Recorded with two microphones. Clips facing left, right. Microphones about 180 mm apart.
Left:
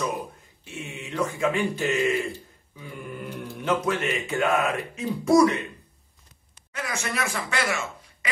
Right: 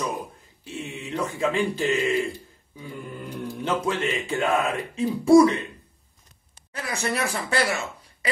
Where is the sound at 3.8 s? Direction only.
30° right (ahead or behind).